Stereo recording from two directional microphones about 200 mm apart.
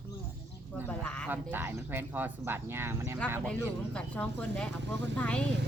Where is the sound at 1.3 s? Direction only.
10° right (ahead or behind).